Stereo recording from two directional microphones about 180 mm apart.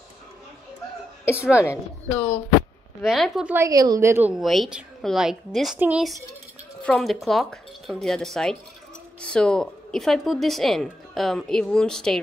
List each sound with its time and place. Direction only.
1.2 s a woman's voice: 5° right (ahead or behind)
3.0 s a woman's voice: centre (ahead or behind)
3.5 s a woman's voice: 20° right (ahead or behind)
4.4 s a woman's voice: centre (ahead or behind)